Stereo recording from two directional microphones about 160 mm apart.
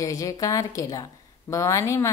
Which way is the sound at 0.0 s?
20° left (ahead or behind).